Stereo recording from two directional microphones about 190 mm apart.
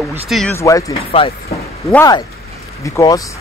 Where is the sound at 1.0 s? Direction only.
30° left (ahead or behind).